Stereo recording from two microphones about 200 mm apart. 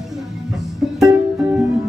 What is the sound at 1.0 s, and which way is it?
Music, centre (ahead or behind).